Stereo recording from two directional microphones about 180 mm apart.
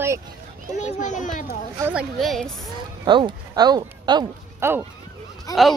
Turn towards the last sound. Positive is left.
turn(degrees=0)  # may be behind; listen again after turning